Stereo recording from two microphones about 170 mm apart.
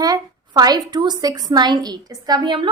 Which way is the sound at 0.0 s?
20° right (ahead or behind).